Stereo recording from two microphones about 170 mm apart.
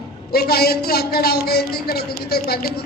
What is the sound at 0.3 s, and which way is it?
A man's voice, 65° left (ahead or behind).